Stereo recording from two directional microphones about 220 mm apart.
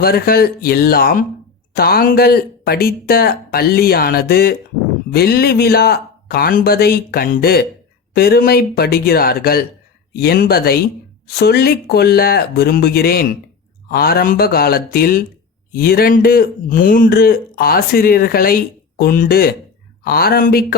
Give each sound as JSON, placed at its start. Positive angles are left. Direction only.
{"t": 0.0, "sound": "speech", "side_deg": 45}